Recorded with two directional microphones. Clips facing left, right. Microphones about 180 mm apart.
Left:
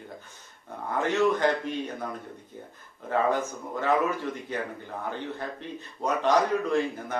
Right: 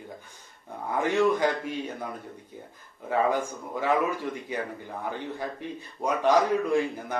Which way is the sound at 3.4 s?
10° right (ahead or behind).